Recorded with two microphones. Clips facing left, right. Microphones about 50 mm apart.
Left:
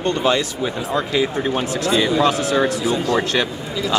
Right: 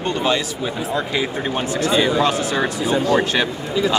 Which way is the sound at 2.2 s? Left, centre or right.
Centre.